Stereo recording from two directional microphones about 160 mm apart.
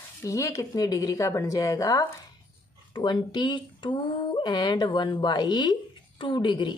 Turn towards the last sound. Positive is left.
turn(degrees=30)  # may be behind; listen again after turning